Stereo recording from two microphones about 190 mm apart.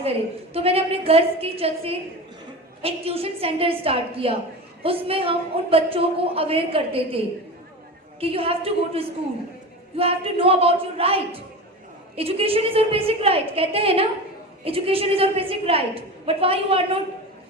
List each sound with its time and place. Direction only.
0.5 s a woman's voice: 30° right (ahead or behind)